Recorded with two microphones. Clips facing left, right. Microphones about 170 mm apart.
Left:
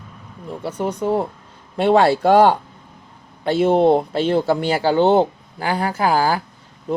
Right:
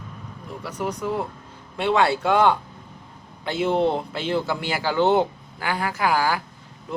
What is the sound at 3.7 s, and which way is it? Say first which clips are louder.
Speech: left 6 dB; 55° left (ahead or behind).